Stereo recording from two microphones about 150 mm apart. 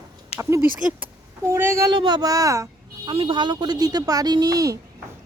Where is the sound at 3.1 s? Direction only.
35° right (ahead or behind).